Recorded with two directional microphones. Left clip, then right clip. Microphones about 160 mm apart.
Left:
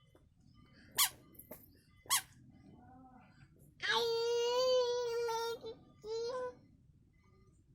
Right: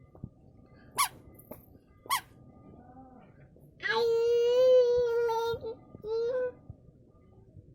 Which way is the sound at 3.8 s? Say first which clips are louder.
Right 7 dB; 15° left (ahead or behind).